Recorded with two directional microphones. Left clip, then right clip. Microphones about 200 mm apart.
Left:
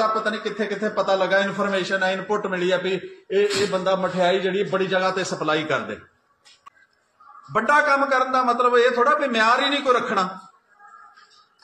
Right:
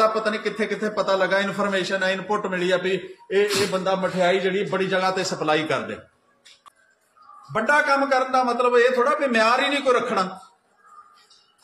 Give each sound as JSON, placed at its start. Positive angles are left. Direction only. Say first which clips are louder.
{"t": 0.1, "sound": "speech", "louder": "even", "side_deg": -45}
{"t": 0.7, "sound": "a man's voice", "louder": "left 2 dB", "side_deg": -25}
{"t": 7.5, "sound": "a man's voice", "louder": "left 1 dB", "side_deg": -10}